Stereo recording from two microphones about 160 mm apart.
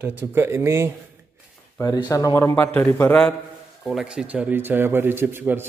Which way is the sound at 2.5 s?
10° left (ahead or behind).